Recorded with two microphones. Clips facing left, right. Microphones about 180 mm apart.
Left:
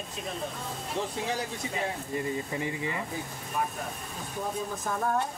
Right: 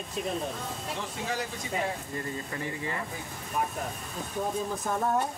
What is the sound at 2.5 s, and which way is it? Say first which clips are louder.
Speech: left 2 dB; 15° left (ahead or behind).